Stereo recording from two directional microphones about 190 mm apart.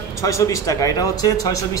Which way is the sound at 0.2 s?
15° left (ahead or behind).